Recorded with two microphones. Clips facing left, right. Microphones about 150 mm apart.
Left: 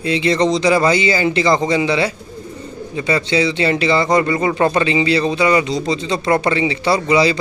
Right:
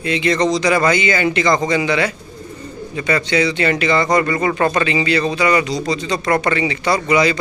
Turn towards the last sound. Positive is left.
turn(degrees=30)  # may be behind; listen again after turning